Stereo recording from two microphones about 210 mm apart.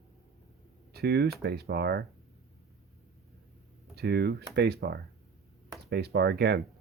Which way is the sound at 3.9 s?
50° right (ahead or behind).